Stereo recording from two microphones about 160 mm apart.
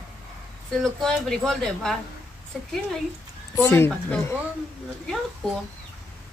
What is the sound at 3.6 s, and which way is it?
Speech, 15° left (ahead or behind).